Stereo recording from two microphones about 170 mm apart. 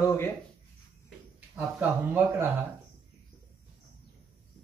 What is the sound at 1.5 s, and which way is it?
Speech, 10° right (ahead or behind).